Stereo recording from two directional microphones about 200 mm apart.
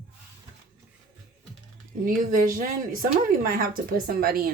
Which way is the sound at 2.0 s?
45° right (ahead or behind).